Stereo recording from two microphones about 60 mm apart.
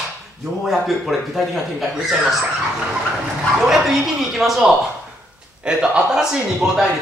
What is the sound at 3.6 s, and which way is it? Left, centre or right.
A man's voice, centre.